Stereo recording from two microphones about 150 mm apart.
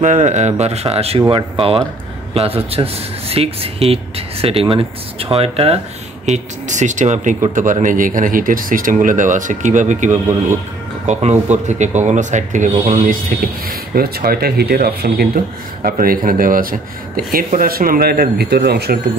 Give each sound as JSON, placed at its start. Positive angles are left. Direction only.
{"t": 0.0, "sound": "speech", "side_deg": -55}
{"t": 6.2, "sound": "speech", "side_deg": -50}
{"t": 13.0, "sound": "speech", "side_deg": -70}
{"t": 15.8, "sound": "speech", "side_deg": -75}